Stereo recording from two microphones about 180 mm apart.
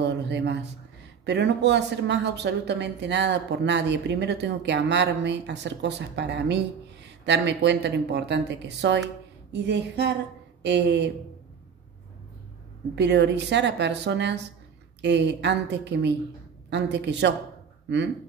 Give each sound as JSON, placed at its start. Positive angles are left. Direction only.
{"t": 0.0, "sound": "speech", "side_deg": -75}
{"t": 12.9, "sound": "speech", "side_deg": -75}